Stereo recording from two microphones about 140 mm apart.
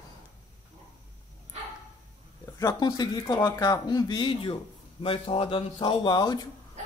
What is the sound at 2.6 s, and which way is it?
Speech, 30° left (ahead or behind).